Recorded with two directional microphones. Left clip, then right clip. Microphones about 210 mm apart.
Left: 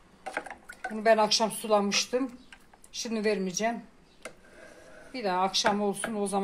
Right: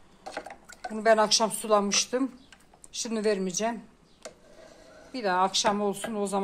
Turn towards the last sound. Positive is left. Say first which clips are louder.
# right 1 dB
turn(degrees=-10)  # may be behind; listen again after turning